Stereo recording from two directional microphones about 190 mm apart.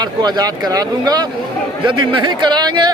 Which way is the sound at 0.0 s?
20° right (ahead or behind).